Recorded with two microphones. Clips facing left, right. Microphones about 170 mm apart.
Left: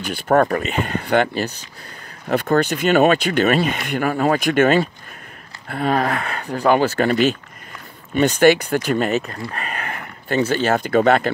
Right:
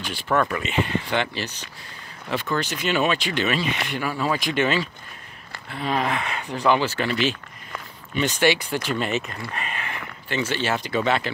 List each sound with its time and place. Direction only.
0.0 s speech: 50° left (ahead or behind)